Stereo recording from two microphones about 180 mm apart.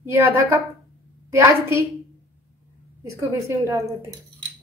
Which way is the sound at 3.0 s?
15° right (ahead or behind).